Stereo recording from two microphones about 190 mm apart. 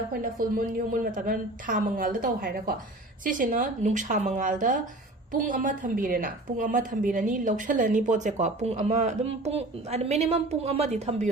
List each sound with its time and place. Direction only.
0.1 s a woman's voice: 45° right (ahead or behind)